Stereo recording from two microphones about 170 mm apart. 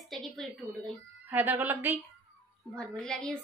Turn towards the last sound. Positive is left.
turn(degrees=5)  # may be behind; listen again after turning